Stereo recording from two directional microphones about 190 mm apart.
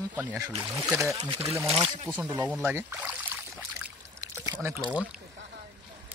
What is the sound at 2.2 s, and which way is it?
Speech, 10° right (ahead or behind).